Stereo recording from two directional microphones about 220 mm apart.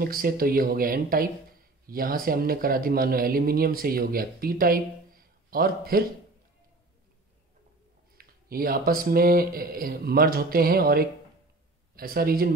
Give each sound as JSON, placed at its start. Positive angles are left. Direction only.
{"t": 0.0, "sound": "speech", "side_deg": -40}
{"t": 8.2, "sound": "a man's voice", "side_deg": -40}